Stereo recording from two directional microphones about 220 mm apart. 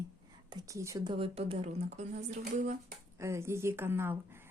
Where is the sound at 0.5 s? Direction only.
15° right (ahead or behind); by 2.7 s 35° right (ahead or behind).